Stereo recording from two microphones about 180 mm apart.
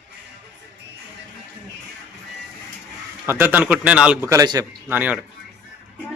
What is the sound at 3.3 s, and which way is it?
Speech, 10° right (ahead or behind).